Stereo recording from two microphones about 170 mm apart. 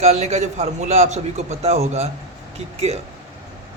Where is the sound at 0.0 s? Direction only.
40° right (ahead or behind).